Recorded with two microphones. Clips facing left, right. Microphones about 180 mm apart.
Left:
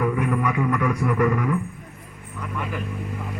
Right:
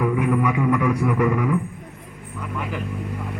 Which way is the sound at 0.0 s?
10° right (ahead or behind).